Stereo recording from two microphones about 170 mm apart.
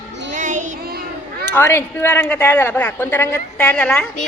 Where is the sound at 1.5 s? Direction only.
15° left (ahead or behind).